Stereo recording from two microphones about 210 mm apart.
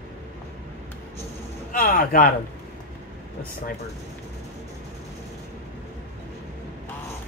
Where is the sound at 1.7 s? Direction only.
40° left (ahead or behind).